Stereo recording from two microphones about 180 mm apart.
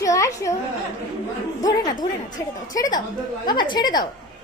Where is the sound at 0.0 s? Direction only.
20° left (ahead or behind).